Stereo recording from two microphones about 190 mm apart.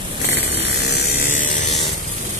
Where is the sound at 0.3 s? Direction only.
65° left (ahead or behind).